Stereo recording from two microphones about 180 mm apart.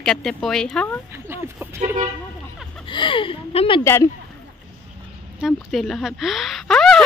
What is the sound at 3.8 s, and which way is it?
Speech, 15° left (ahead or behind).